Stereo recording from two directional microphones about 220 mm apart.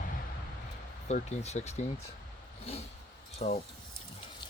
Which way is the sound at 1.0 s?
30° left (ahead or behind).